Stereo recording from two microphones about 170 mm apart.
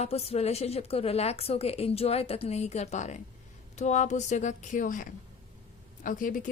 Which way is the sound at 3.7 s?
45° left (ahead or behind).